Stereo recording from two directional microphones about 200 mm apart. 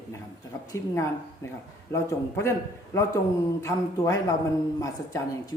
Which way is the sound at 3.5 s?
15° left (ahead or behind).